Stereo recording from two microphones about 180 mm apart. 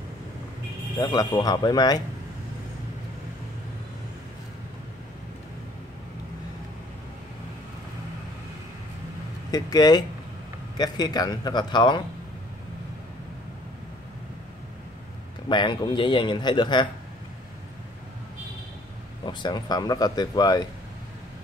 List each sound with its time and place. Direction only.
0.9 s a man's voice: 20° left (ahead or behind)
9.5 s a man's voice: 20° left (ahead or behind)
15.4 s a man's voice: 25° left (ahead or behind)
19.2 s a man's voice: 25° left (ahead or behind)